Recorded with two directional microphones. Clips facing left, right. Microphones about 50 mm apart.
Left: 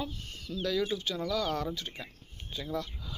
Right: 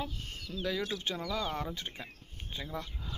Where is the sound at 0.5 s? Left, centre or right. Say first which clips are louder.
Left 4 dB; centre.